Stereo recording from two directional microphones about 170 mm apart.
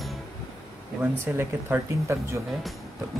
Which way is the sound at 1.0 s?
10° right (ahead or behind).